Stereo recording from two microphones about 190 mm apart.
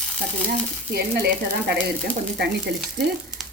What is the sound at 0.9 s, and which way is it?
Speech, 55° right (ahead or behind).